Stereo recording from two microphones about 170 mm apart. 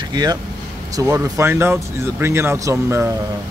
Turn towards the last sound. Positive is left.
turn(degrees=-15)  # may be behind; listen again after turning